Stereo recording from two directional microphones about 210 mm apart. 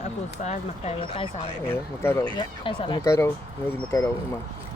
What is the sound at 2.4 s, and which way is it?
Speech, 25° left (ahead or behind).